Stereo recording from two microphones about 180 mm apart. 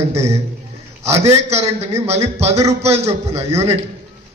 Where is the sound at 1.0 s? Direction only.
35° right (ahead or behind).